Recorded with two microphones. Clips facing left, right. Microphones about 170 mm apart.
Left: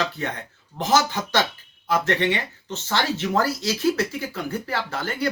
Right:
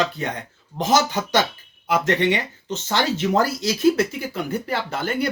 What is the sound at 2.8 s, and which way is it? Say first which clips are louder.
Speech: right 3 dB; 15° right (ahead or behind).